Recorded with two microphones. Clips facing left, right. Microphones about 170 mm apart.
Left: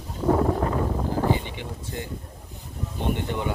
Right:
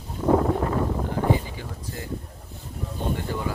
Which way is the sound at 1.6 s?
25° left (ahead or behind).